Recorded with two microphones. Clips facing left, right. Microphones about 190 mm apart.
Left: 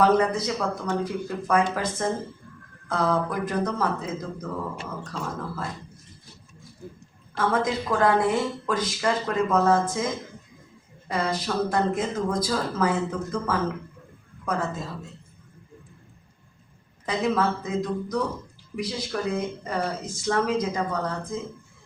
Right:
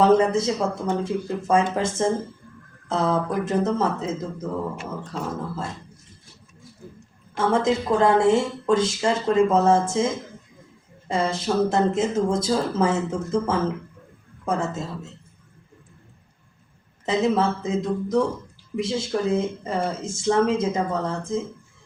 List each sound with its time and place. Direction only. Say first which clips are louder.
0.0 s a woman's voice: right 3 dB; 25° right (ahead or behind)
7.3 s a woman's voice: right 4 dB; 25° right (ahead or behind)
11.1 s a woman's voice: right 4 dB; 25° right (ahead or behind)
17.1 s a woman's voice: right 3 dB; 25° right (ahead or behind)